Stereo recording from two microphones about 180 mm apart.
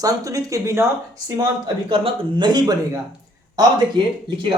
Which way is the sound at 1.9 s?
30° right (ahead or behind).